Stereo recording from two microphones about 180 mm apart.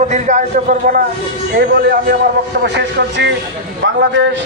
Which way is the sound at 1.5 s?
70° right (ahead or behind).